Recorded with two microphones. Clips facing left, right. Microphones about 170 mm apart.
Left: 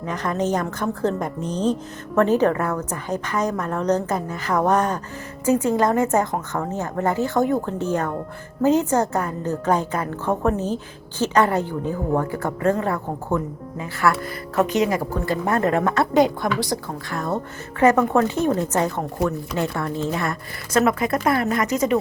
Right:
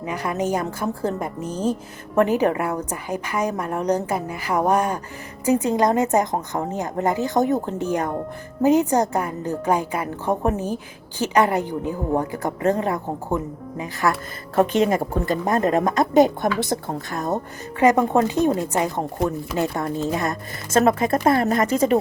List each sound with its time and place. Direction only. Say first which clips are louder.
0.0 s a woman's voice: left 1 dB; 10° right (ahead or behind)
14.1 s a woman's voice: left 1 dB; 30° right (ahead or behind)